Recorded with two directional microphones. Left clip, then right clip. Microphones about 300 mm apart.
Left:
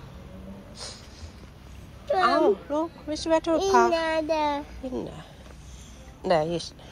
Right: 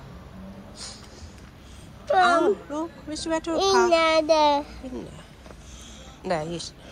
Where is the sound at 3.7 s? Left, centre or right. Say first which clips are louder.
Right 4 dB; centre.